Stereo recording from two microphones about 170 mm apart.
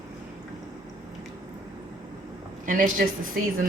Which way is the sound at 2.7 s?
50° right (ahead or behind).